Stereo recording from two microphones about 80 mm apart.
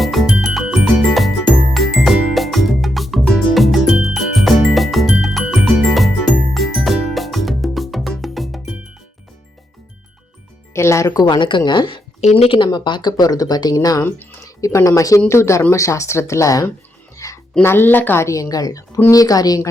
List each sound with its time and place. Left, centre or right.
0.0 s music: centre
10.8 s music: left
11.1 s speech: left
17.2 s music: left
17.6 s a woman's voice: left
18.3 s a woman's voice: left